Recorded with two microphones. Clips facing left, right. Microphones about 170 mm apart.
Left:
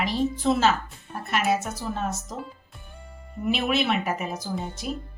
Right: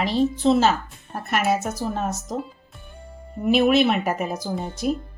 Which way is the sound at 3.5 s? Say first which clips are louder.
Right 7 dB; 40° right (ahead or behind).